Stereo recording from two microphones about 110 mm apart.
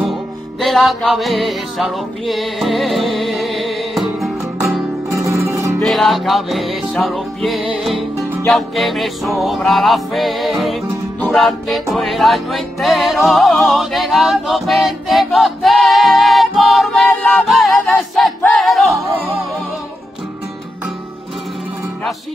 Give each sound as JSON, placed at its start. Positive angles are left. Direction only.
{"t": 0.0, "sound": "music", "side_deg": 0}
{"t": 5.4, "sound": "music", "side_deg": -25}
{"t": 5.8, "sound": "music", "side_deg": 0}
{"t": 16.9, "sound": "singing", "side_deg": 10}
{"t": 17.5, "sound": "a capella", "side_deg": 0}
{"t": 18.4, "sound": "music", "side_deg": 0}